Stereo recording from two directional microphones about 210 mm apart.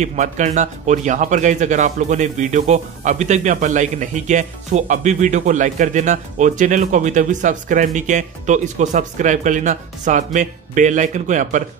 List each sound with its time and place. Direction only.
0.0 s a man's voice: 35° right (ahead or behind)